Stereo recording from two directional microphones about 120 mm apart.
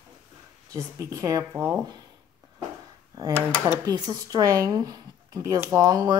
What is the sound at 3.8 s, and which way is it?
Speech, 35° right (ahead or behind).